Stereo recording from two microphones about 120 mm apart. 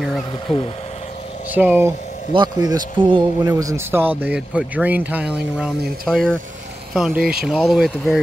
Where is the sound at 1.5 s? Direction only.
15° right (ahead or behind).